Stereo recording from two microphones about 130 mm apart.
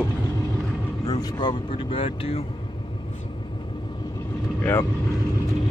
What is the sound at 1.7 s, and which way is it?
Speech, 45° left (ahead or behind).